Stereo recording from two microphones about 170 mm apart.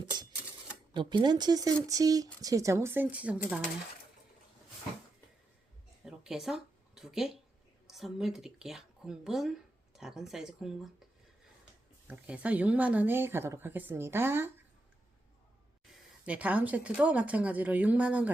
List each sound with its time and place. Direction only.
0.9 s speech: 25° right (ahead or behind); by 3.6 s 5° right (ahead or behind)
6.1 s a sound: 5° right (ahead or behind)
7.9 s speech: centre (ahead or behind)
16.2 s speech: 10° right (ahead or behind)